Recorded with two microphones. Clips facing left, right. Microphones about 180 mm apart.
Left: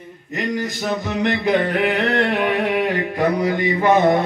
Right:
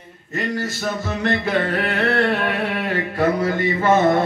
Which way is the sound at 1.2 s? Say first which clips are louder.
Left 2 dB; 15° left (ahead or behind).